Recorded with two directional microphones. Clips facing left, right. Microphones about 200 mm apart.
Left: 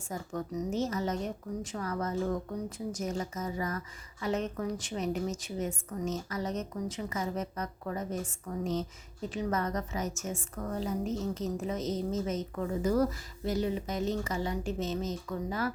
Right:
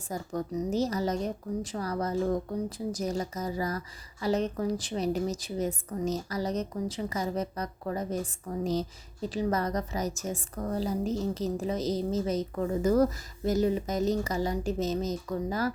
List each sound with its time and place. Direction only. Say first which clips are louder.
0.1 s a woman's voice: right 3 dB; 35° right (ahead or behind)